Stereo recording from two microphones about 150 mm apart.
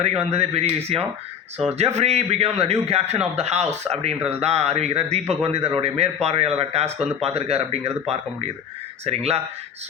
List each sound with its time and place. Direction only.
0.3 s a man's voice: 45° right (ahead or behind)